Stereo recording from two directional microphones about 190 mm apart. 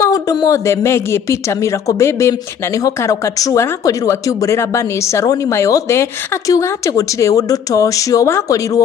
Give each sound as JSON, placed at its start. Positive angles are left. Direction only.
{"t": 0.0, "sound": "speech", "side_deg": 20}